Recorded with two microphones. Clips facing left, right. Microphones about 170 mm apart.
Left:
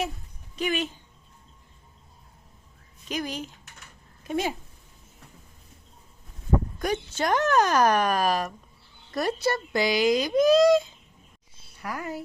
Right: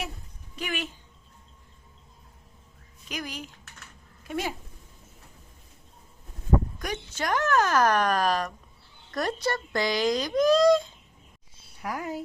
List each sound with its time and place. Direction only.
0.5 s speech: 20° left (ahead or behind)
3.1 s speech: 25° left (ahead or behind)
6.7 s speech: 30° left (ahead or behind); by 10.8 s 10° left (ahead or behind)
11.8 s speech: 10° right (ahead or behind)